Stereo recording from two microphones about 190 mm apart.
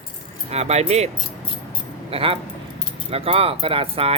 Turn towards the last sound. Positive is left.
turn(degrees=-30)  # may be behind; listen again after turning